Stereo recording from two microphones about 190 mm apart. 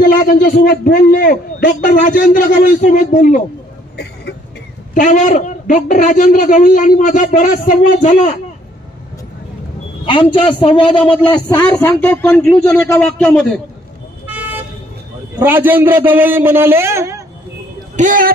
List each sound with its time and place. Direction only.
0.1 s a man's voice: 45° left (ahead or behind)
3.9 s a sound: 60° left (ahead or behind)
4.9 s a man's voice: 40° left (ahead or behind)
10.3 s a man's voice: 30° left (ahead or behind)
11.7 s a man's voice: 10° left (ahead or behind)
15.3 s a man's voice: 10° right (ahead or behind)
17.9 s speech: 45° right (ahead or behind)